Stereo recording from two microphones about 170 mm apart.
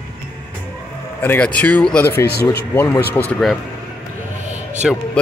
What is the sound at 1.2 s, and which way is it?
Speech, 10° left (ahead or behind).